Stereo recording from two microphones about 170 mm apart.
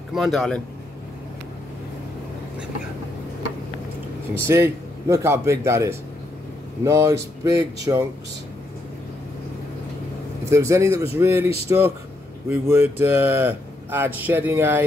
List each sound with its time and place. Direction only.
0.1 s speech: centre (ahead or behind)
4.5 s speech: 15° right (ahead or behind)
10.5 s speech: 15° right (ahead or behind)